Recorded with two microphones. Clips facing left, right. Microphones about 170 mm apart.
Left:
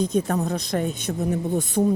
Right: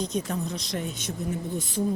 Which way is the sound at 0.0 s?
50° left (ahead or behind).